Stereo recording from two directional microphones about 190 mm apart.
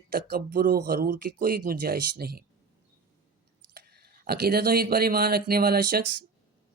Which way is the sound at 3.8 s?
55° right (ahead or behind).